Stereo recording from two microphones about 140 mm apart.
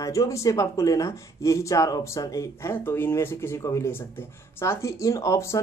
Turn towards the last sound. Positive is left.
turn(degrees=20)  # may be behind; listen again after turning